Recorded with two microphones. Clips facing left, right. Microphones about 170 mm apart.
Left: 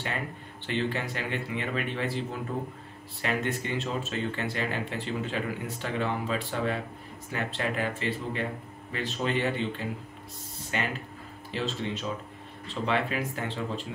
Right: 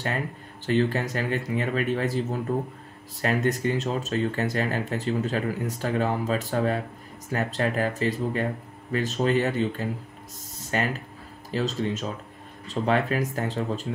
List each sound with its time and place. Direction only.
0.7 s speech: 40° right (ahead or behind)
3.2 s speech: 40° right (ahead or behind)
10.6 s a sound: 40° right (ahead or behind)
11.5 s speech: 40° right (ahead or behind)